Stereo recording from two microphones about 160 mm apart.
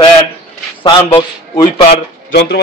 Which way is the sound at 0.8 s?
30° left (ahead or behind).